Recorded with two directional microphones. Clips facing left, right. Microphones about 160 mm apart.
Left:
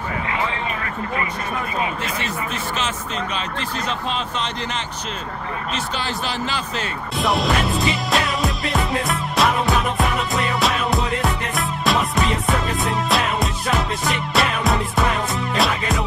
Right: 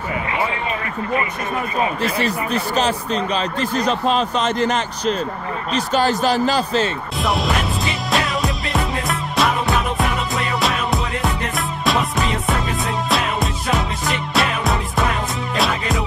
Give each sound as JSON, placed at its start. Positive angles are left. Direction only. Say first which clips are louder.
{"t": 2.0, "sound": "speech", "louder": "right 6 dB", "side_deg": -35}
{"t": 7.2, "sound": "music", "louder": "left 1 dB", "side_deg": 0}